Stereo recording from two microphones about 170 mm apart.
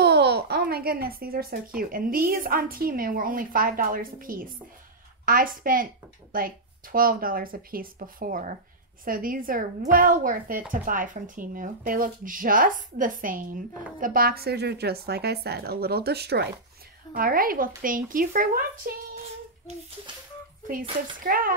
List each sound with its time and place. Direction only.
0.0 s a sound: 75° right (ahead or behind); by 1.6 s 60° right (ahead or behind)
1.8 s a woman's voice: 55° right (ahead or behind); by 16.5 s 75° right (ahead or behind)
17.1 s a woman's voice: 55° right (ahead or behind)
21.2 s a woman's voice: 55° right (ahead or behind)